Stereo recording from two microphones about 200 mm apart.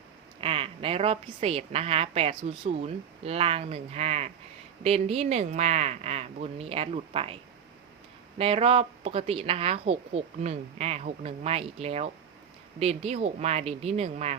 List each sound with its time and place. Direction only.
0.4 s a woman's voice: 25° right (ahead or behind)
8.4 s a woman's voice: 30° right (ahead or behind)